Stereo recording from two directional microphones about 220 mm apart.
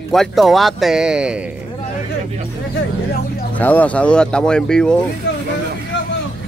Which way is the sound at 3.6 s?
5° left (ahead or behind).